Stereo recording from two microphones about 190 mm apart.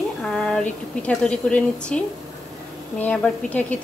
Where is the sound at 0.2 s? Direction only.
Centre (ahead or behind).